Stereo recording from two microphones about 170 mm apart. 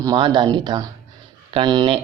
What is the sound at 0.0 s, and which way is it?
Speech, 25° right (ahead or behind).